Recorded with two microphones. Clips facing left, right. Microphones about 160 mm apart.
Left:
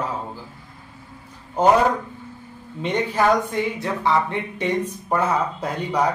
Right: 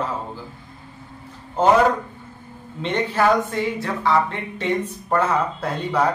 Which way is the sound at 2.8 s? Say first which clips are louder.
Even; 15° left (ahead or behind).